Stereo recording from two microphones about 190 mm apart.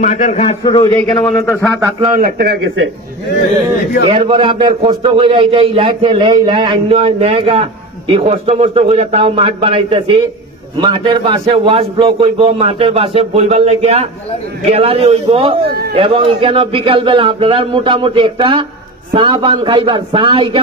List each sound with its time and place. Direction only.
0.0 s a man's voice: 40° left (ahead or behind)
0.7 s a man's voice: 20° left (ahead or behind)
0.9 s a man's voice: 10° left (ahead or behind)
2.1 s a man's voice: 55° right (ahead or behind)
4.1 s a man's voice: 30° right (ahead or behind)